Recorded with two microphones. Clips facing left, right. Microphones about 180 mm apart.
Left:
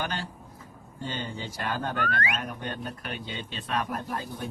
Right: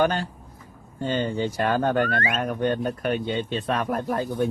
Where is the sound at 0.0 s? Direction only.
45° right (ahead or behind).